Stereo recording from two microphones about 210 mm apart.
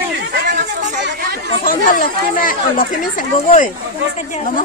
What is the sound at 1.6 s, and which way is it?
Speech, 40° left (ahead or behind).